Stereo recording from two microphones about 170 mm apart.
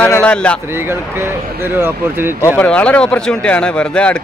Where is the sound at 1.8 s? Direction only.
15° right (ahead or behind).